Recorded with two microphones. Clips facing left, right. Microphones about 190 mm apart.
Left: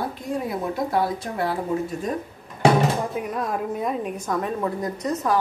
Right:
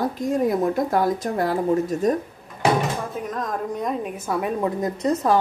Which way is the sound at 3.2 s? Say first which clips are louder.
Left 1 dB; 10° left (ahead or behind).